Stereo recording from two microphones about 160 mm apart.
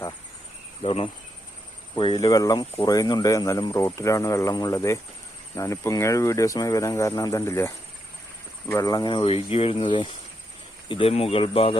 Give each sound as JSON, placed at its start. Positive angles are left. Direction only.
{"t": 0.9, "sound": "speech", "side_deg": 35}